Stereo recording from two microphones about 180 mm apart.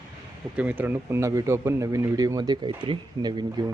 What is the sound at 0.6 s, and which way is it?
Speech, 10° right (ahead or behind).